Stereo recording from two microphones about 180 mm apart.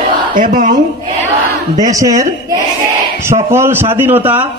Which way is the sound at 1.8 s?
20° right (ahead or behind).